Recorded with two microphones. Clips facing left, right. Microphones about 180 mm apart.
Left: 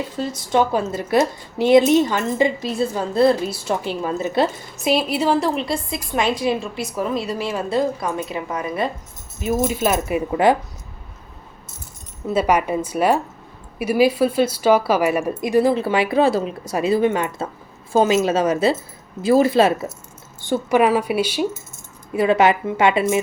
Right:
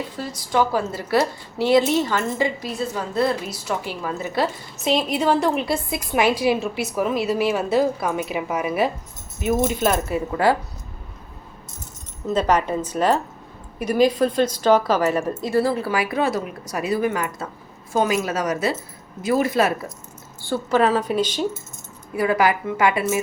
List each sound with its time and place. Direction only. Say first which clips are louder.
0.2 s a woman's voice: left 3 dB; 25° left (ahead or behind)
4.8 s a woman's voice: left 2 dB; 10° left (ahead or behind)
12.3 s a woman's voice: left 1 dB; 10° left (ahead or behind); by 19.9 s 25° left (ahead or behind)
20.4 s a woman's voice: left 2 dB; 15° left (ahead or behind)
22.1 s a woman's voice: left 3 dB; 25° left (ahead or behind)